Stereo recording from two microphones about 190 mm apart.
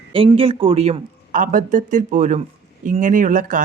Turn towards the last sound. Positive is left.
turn(degrees=-45)  # may be behind; listen again after turning